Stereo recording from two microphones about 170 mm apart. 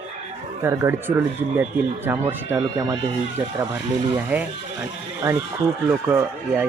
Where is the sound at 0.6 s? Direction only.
15° right (ahead or behind).